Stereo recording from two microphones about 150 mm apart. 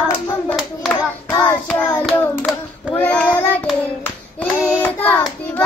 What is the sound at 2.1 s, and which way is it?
Hands, 15° left (ahead or behind).